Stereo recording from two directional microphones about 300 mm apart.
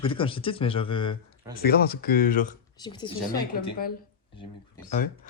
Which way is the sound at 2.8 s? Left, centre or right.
Centre.